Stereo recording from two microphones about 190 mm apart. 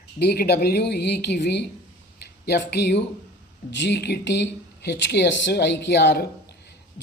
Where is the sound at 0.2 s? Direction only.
55° left (ahead or behind).